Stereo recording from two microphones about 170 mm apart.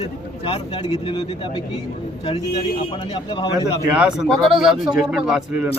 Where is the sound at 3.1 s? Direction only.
25° left (ahead or behind).